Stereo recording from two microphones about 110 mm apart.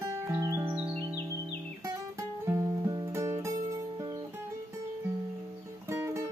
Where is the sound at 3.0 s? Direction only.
25° right (ahead or behind).